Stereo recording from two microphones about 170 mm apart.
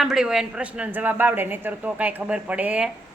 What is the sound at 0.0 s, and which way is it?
A woman's voice, 5° right (ahead or behind).